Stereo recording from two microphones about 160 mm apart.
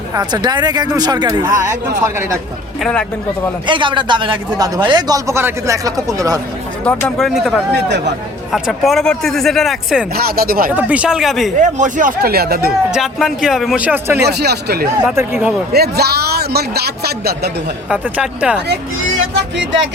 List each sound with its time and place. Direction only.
0.1 s speech: 25° right (ahead or behind)
2.8 s speech: 5° left (ahead or behind)
3.7 s speech: 30° right (ahead or behind)
6.8 s speech: 5° left (ahead or behind)
7.9 s speech: 90° right
8.5 s speech: centre (ahead or behind)
10.2 s speech: 70° right (ahead or behind)
10.7 s speech: 10° right (ahead or behind)
11.6 s speech: 55° right (ahead or behind); by 12.7 s 75° right (ahead or behind)
12.9 s speech: centre (ahead or behind)
14.2 s speech: 90° right
15.0 s speech: 15° right (ahead or behind)
15.7 s speech: 80° right
17.8 s speech: 5° right (ahead or behind)